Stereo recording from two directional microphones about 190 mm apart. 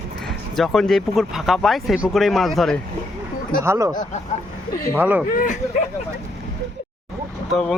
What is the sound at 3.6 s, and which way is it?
Speech, 15° right (ahead or behind).